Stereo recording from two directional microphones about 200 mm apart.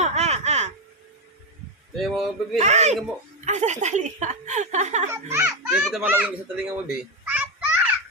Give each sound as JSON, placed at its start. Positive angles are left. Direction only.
{"t": 0.0, "sound": "a sound", "side_deg": -35}
{"t": 2.0, "sound": "speech", "side_deg": 0}
{"t": 2.6, "sound": "speech", "side_deg": -35}
{"t": 5.0, "sound": "a child's voice", "side_deg": -10}
{"t": 6.8, "sound": "children playing", "side_deg": -5}